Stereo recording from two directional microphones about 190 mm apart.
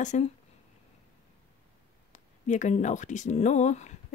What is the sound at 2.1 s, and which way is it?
Speech, 40° left (ahead or behind).